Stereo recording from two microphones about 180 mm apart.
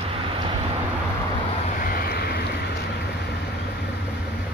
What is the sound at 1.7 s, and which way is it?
Vehicle, 55° left (ahead or behind).